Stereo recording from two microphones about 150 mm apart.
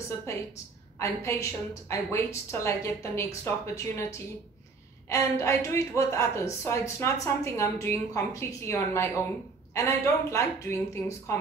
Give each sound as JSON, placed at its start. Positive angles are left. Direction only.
{"t": 0.9, "sound": "a woman's voice", "side_deg": 20}